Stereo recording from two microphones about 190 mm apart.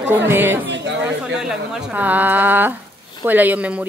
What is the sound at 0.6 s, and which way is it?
Speech, 70° right (ahead or behind).